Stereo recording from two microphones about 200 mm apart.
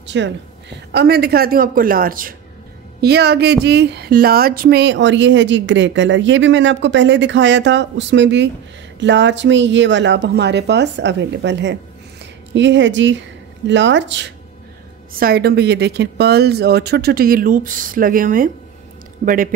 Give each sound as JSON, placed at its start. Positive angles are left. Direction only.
{"t": 0.0, "sound": "speech", "side_deg": -60}
{"t": 15.1, "sound": "speech", "side_deg": -50}